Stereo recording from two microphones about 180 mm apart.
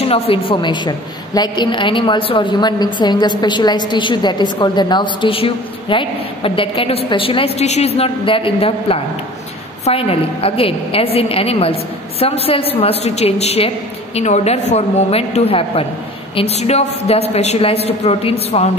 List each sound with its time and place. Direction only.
0.1 s a woman's voice: 30° left (ahead or behind)